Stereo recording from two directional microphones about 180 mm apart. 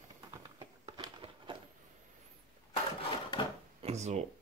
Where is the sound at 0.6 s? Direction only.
30° right (ahead or behind).